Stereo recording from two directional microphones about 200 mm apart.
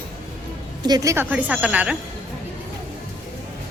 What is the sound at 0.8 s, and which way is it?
A woman's voice, 20° right (ahead or behind).